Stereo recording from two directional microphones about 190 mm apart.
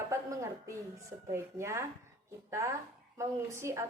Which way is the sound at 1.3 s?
15° right (ahead or behind).